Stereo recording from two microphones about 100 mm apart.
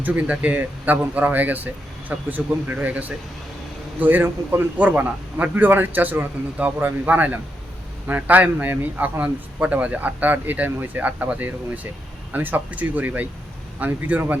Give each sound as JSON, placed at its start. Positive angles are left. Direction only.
{"t": 0.0, "sound": "a man's voice", "side_deg": -15}